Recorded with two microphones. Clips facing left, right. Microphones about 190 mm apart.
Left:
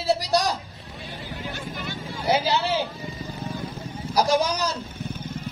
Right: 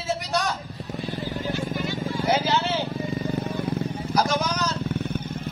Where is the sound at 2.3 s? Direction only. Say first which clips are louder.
Left 2 dB; 15° left (ahead or behind).